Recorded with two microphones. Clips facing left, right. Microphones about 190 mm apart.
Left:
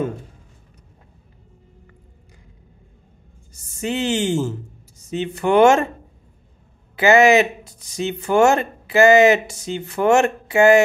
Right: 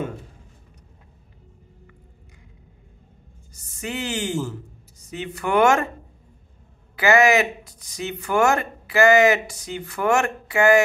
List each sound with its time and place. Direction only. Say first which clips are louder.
3.5 s speech: left 6 dB; 25° left (ahead or behind)
7.0 s speech: left 4 dB; 25° left (ahead or behind)